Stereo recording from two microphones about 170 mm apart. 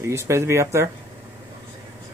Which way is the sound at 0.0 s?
15° right (ahead or behind).